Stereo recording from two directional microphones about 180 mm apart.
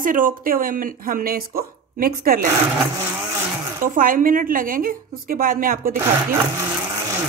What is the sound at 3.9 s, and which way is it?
Speech, 50° right (ahead or behind).